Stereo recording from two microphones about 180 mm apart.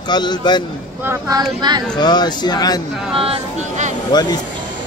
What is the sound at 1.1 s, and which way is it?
Speech, 20° right (ahead or behind).